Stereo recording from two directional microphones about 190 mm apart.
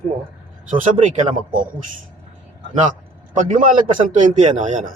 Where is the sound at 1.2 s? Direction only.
45° right (ahead or behind).